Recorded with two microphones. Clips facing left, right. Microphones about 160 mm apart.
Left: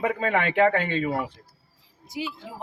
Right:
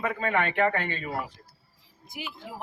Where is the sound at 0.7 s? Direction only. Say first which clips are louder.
Left 6 dB; 80° left.